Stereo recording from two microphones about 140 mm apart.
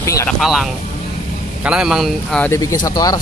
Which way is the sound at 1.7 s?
5° right (ahead or behind).